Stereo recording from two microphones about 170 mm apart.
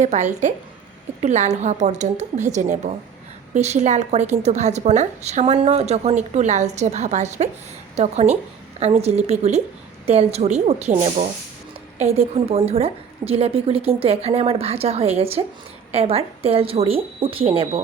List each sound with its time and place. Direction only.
0.0 s a woman's voice: 45° right (ahead or behind)